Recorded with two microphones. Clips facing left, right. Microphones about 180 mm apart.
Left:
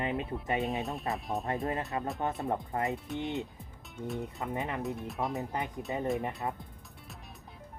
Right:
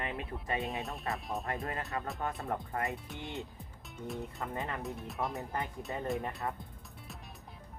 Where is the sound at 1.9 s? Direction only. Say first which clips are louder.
Left 4 dB; 20° left (ahead or behind).